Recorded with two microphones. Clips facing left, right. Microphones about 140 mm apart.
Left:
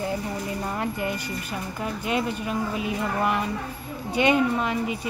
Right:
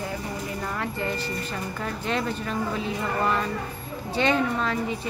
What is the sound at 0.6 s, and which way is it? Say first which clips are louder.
Speech: left 1 dB; 20° left (ahead or behind).